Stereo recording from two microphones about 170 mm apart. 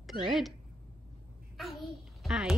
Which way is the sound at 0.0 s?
Centre (ahead or behind).